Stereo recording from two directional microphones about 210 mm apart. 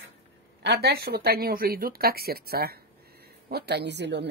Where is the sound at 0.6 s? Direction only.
50° right (ahead or behind).